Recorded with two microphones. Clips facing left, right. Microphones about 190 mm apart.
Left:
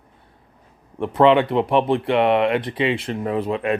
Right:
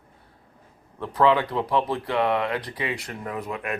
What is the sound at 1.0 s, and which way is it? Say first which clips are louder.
Speech: left 6 dB; 25° left (ahead or behind).